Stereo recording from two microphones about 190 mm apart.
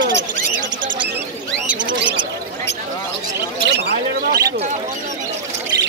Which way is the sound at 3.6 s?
60° right (ahead or behind).